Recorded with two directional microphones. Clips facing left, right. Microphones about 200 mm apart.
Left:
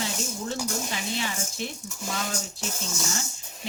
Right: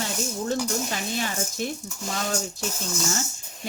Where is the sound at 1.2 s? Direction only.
45° right (ahead or behind).